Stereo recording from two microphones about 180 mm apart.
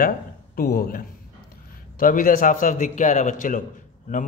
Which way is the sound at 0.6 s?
55° left (ahead or behind).